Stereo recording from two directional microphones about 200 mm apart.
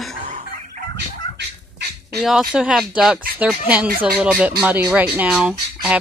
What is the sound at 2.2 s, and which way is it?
Speech, centre (ahead or behind).